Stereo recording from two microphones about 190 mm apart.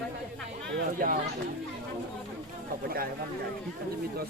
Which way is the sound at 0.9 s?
45° right (ahead or behind).